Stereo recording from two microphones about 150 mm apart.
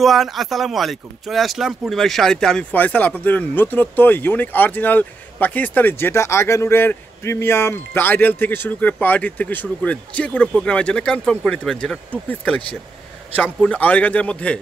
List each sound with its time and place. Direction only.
0.0 s speech: centre (ahead or behind)